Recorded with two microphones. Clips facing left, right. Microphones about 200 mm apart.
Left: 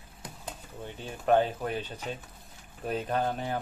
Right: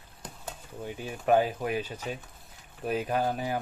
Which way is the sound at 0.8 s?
10° right (ahead or behind).